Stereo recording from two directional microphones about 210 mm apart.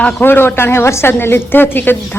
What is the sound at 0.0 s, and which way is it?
A woman's voice, 10° left (ahead or behind).